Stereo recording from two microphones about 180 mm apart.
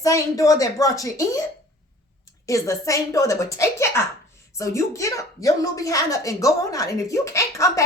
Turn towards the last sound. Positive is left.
turn(degrees=15)  # may be behind; listen again after turning